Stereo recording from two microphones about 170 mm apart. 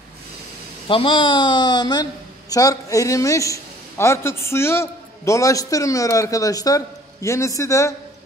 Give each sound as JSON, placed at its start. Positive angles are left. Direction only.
{"t": 0.8, "sound": "a man's voice", "side_deg": 30}